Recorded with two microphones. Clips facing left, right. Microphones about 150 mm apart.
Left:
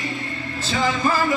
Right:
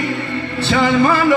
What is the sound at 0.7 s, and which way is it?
Music, 65° right (ahead or behind).